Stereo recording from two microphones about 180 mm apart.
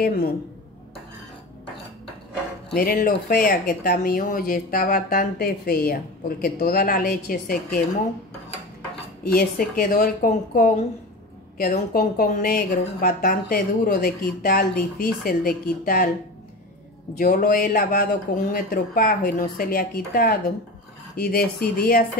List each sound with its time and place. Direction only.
0.0 s speech: 60° left (ahead or behind)
2.7 s speech: 55° left (ahead or behind)
9.2 s a woman's voice: 55° left (ahead or behind)
17.2 s speech: 55° left (ahead or behind)